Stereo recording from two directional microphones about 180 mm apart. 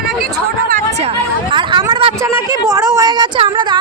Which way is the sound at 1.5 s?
25° right (ahead or behind).